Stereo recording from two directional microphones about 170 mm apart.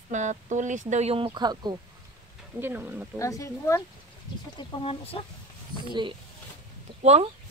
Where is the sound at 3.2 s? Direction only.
20° left (ahead or behind).